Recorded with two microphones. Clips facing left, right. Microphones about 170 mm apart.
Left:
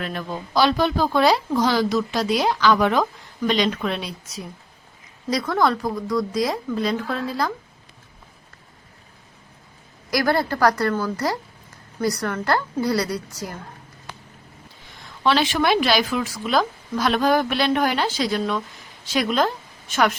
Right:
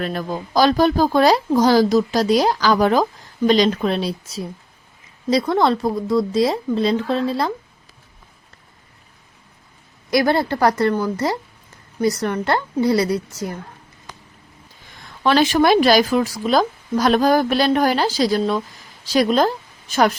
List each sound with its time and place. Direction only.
0.0 s speech: 40° right (ahead or behind)
10.1 s speech: 25° right (ahead or behind)
15.2 s speech: 45° right (ahead or behind)